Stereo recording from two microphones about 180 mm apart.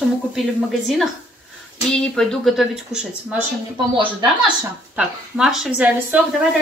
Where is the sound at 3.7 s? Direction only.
30° right (ahead or behind).